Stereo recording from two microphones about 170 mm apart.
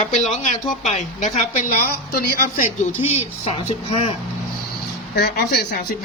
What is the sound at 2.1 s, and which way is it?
Speech, 65° left (ahead or behind).